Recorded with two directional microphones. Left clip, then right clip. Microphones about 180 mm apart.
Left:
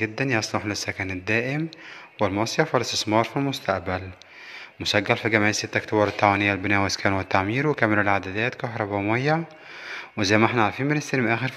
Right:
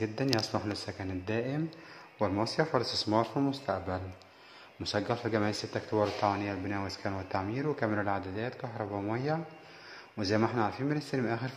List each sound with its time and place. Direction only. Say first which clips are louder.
0.0 s speech: left 7 dB; 10° left (ahead or behind)
2.8 s speech: left 7 dB; 45° left (ahead or behind)
3.1 s speech: left 7 dB; 15° left (ahead or behind)
4.9 s speech: left 10 dB; 20° left (ahead or behind)